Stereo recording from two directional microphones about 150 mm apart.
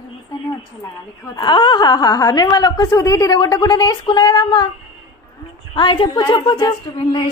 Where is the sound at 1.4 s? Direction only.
30° left (ahead or behind).